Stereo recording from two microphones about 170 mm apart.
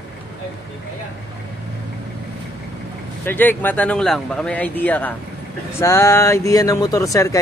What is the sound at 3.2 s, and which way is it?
Speech, 10° left (ahead or behind).